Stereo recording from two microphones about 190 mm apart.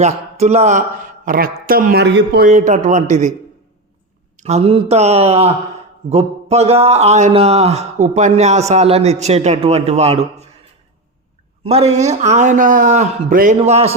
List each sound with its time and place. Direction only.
0.0 s speech: 35° right (ahead or behind); by 2.5 s 60° right (ahead or behind)
2.5 s speech: 40° right (ahead or behind)
4.4 s speech: 35° right (ahead or behind)
11.6 s speech: 35° right (ahead or behind)
13.6 s speech: 35° right (ahead or behind)